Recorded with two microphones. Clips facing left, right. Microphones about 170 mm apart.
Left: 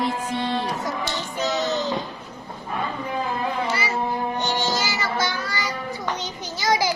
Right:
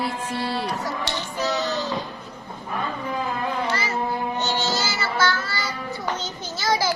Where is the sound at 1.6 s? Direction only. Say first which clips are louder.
Left 2 dB; 20° left (ahead or behind).